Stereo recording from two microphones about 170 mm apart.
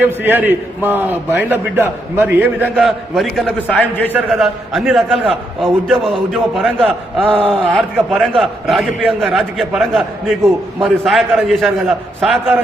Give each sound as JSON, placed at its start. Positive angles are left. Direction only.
{"t": 0.0, "sound": "a man's voice", "side_deg": -10}
{"t": 4.3, "sound": "a man's voice", "side_deg": 0}